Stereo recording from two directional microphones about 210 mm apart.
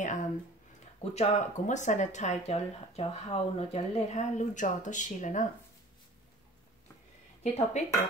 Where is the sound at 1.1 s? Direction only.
35° left (ahead or behind).